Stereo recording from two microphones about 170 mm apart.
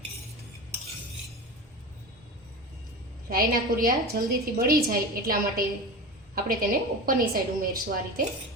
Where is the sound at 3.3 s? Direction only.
60° right (ahead or behind).